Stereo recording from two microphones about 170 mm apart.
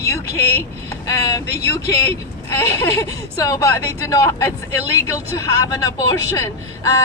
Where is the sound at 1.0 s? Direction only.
20° left (ahead or behind).